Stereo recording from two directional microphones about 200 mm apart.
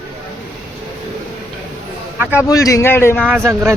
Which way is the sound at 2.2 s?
10° right (ahead or behind).